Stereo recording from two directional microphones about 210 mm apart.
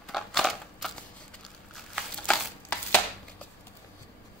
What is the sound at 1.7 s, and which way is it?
Crumpling, centre (ahead or behind).